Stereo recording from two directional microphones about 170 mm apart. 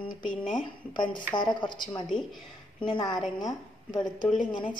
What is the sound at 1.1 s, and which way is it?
Speech, 25° left (ahead or behind).